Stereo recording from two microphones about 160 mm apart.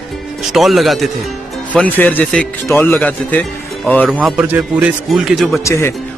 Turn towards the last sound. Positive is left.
turn(degrees=20)  # may be behind; listen again after turning